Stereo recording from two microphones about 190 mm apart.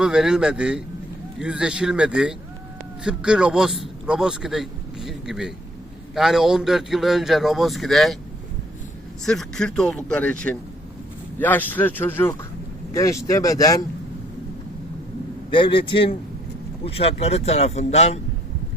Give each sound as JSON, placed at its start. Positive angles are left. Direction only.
{"t": 0.0, "sound": "a man's voice", "side_deg": -5}
{"t": 9.2, "sound": "a man's voice", "side_deg": 5}
{"t": 15.5, "sound": "a man's voice", "side_deg": 25}